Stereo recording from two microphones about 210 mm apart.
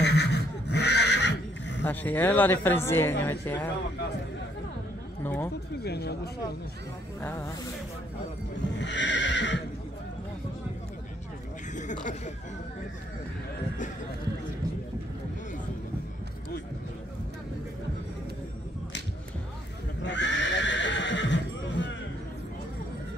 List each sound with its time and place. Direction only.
0.0 s neigh: 55° left (ahead or behind)
1.9 s speech: 10° left (ahead or behind)
5.2 s speech: 10° left (ahead or behind)
5.9 s speech: 50° left (ahead or behind)
7.2 s speech: 10° left (ahead or behind)
8.7 s neigh: 60° left (ahead or behind)
11.7 s speech: 35° left (ahead or behind)
20.0 s horse: 55° left (ahead or behind)